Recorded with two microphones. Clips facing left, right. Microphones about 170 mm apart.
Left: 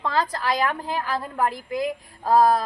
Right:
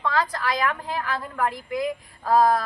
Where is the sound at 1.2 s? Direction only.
30° left (ahead or behind).